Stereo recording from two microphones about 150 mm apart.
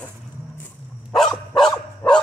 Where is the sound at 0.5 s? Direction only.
5° left (ahead or behind).